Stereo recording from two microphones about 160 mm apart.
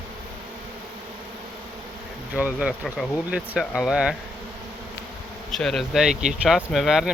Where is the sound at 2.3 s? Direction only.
10° right (ahead or behind).